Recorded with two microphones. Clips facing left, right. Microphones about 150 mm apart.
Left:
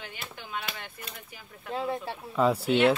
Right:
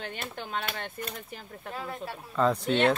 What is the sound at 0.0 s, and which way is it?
Speech, 50° right (ahead or behind).